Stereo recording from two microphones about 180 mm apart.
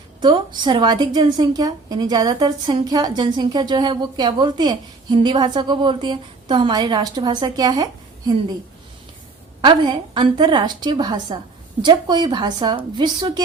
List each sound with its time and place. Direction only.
0.2 s a woman's voice: 25° right (ahead or behind)
9.6 s a woman's voice: 25° right (ahead or behind)